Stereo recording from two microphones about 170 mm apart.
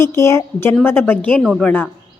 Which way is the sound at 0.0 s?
15° left (ahead or behind).